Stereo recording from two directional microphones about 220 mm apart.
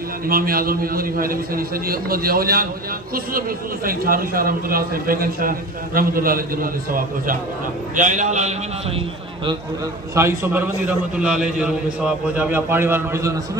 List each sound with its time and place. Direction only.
0.3 s a man's voice: 40° right (ahead or behind)
10.1 s a man's voice: 10° right (ahead or behind)